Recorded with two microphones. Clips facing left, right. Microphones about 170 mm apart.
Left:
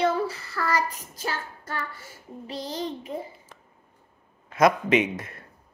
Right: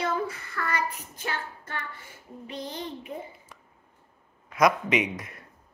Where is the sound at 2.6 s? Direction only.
90° left.